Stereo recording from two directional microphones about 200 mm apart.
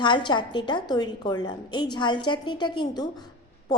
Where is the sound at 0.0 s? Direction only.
20° left (ahead or behind).